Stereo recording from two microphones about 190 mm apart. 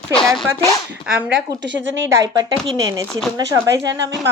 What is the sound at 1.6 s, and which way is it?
Speech, 70° right (ahead or behind).